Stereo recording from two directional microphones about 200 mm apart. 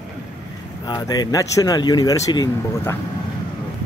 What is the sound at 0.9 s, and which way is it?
Speech, 20° left (ahead or behind).